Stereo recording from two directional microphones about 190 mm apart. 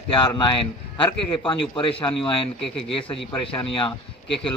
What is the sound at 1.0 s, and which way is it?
Speech, 25° left (ahead or behind).